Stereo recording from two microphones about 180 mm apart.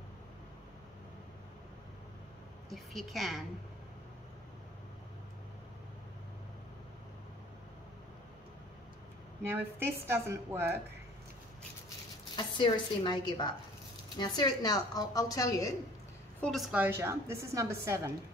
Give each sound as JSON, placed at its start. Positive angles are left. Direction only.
{"t": 2.7, "sound": "a woman's voice", "side_deg": 0}
{"t": 9.4, "sound": "a woman's voice", "side_deg": -15}
{"t": 12.4, "sound": "a woman's voice", "side_deg": 25}
{"t": 16.3, "sound": "a woman's voice", "side_deg": 5}
{"t": 16.7, "sound": "a woman's voice", "side_deg": -10}